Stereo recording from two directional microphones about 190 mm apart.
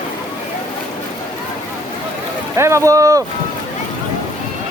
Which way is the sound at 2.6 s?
15° right (ahead or behind).